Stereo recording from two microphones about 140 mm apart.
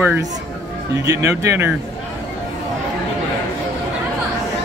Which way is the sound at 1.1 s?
20° right (ahead or behind).